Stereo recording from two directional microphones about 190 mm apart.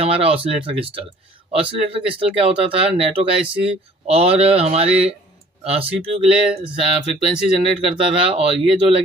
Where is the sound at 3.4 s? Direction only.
5° right (ahead or behind).